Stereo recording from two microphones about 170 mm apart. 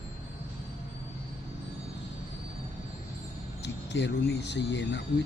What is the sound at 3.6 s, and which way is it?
Speech, 90° left.